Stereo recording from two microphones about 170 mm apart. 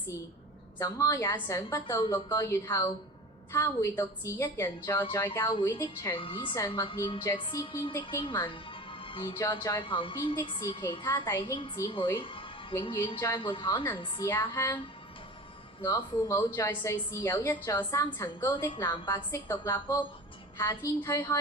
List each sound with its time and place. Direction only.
0.8 s a woman's voice: 20° left (ahead or behind)
6.1 s a woman's voice: 30° left (ahead or behind)
9.4 s a woman's voice: 20° left (ahead or behind)
9.9 s a woman's voice: 30° left (ahead or behind)
11.0 s a woman's voice: 15° left (ahead or behind); by 12.5 s 30° left (ahead or behind)
13.1 s a woman's voice: 15° left (ahead or behind)
13.4 s a woman's voice: 30° left (ahead or behind)
14.0 s a woman's voice: 20° left (ahead or behind)
15.8 s a woman's voice: 15° left (ahead or behind)